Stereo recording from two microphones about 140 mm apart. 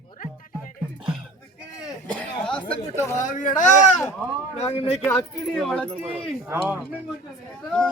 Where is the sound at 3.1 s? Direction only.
65° left (ahead or behind).